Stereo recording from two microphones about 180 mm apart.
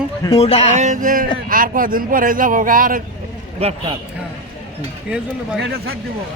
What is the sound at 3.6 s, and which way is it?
Speech, 35° right (ahead or behind).